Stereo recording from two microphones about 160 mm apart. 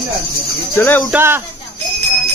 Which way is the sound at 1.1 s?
15° right (ahead or behind).